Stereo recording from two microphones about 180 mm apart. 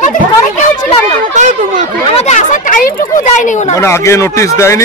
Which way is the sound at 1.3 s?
40° right (ahead or behind).